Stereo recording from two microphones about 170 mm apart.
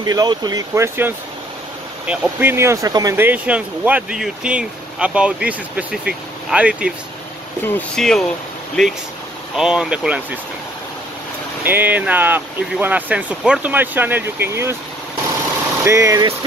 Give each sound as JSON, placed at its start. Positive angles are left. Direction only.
{"t": 0.0, "sound": "speech", "side_deg": -25}
{"t": 7.6, "sound": "speech", "side_deg": 10}
{"t": 11.6, "sound": "speech", "side_deg": -10}
{"t": 15.8, "sound": "speech", "side_deg": -15}